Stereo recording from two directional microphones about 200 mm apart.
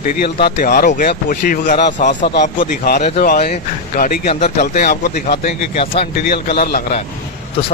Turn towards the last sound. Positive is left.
turn(degrees=50)  # may be behind; listen again after turning